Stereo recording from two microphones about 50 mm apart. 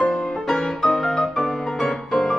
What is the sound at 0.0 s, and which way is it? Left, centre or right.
Music, centre.